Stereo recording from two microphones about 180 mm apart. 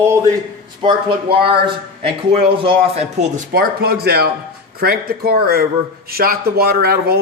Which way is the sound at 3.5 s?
60° right (ahead or behind).